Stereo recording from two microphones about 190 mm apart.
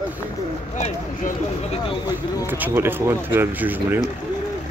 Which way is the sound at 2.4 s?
10° right (ahead or behind).